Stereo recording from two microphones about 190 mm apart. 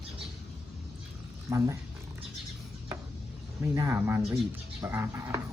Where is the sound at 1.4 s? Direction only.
15° right (ahead or behind).